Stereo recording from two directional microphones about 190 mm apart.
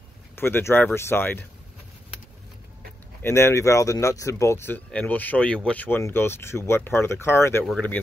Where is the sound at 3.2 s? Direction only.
15° left (ahead or behind).